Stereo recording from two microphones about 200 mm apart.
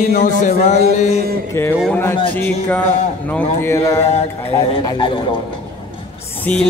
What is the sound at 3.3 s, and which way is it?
Speech, 10° left (ahead or behind).